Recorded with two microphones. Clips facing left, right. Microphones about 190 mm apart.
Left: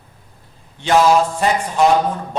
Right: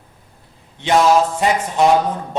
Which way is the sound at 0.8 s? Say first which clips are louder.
Even; 20° right (ahead or behind).